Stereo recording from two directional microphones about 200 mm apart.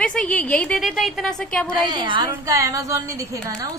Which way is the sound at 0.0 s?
5° left (ahead or behind).